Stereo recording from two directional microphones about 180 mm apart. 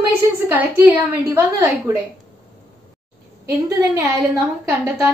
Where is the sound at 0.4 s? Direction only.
10° right (ahead or behind).